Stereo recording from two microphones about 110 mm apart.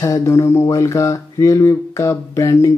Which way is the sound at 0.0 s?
30° left (ahead or behind).